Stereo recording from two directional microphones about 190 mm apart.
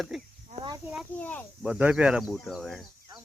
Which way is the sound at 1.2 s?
10° left (ahead or behind).